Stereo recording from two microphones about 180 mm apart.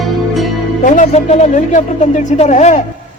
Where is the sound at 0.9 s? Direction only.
40° left (ahead or behind).